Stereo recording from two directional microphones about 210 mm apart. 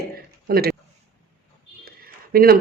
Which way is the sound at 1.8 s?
45° right (ahead or behind).